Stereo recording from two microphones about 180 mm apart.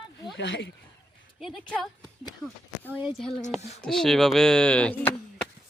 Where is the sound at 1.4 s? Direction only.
5° left (ahead or behind).